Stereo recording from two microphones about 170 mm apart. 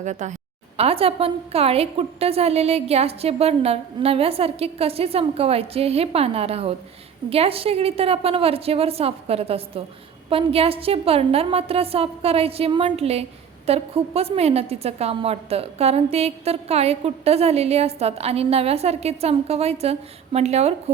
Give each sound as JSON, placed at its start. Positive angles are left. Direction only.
{"t": 0.0, "sound": "a woman's voice", "side_deg": -45}